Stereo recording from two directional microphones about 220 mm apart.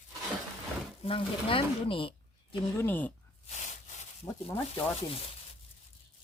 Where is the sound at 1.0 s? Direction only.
25° left (ahead or behind).